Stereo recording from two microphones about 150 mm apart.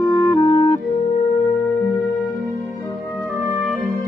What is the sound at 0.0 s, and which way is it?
Music, 20° left (ahead or behind).